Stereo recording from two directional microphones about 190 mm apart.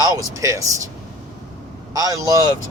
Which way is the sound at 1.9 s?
20° right (ahead or behind).